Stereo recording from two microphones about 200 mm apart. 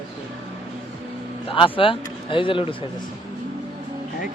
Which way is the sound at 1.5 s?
25° left (ahead or behind).